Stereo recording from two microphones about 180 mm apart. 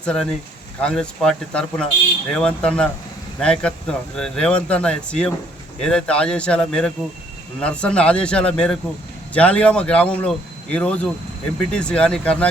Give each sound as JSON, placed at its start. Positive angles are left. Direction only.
{"t": 0.0, "sound": "speech", "side_deg": 5}